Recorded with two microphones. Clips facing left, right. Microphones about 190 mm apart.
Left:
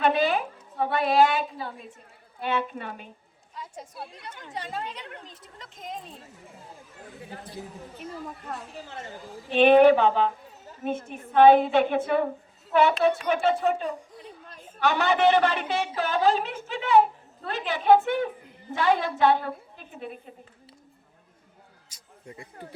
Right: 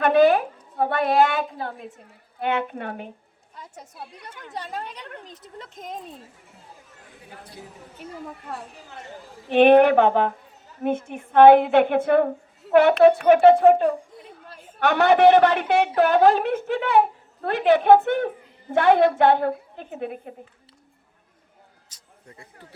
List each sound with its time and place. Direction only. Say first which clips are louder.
0.0 s a woman's voice: right 7 dB; 50° right (ahead or behind)
9.5 s a woman's voice: right 2 dB; 55° right (ahead or behind)
21.8 s a sound: left 6 dB; 15° left (ahead or behind)